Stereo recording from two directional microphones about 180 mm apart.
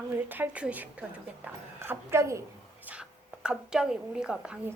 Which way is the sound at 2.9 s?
10° right (ahead or behind).